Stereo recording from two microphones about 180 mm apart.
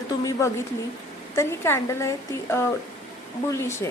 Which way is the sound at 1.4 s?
15° left (ahead or behind).